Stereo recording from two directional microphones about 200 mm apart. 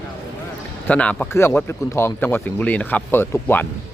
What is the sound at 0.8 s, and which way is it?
A man's voice, 5° left (ahead or behind).